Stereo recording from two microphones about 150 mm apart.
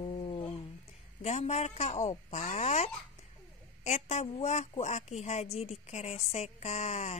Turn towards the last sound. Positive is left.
turn(degrees=50)  # may be behind; listen again after turning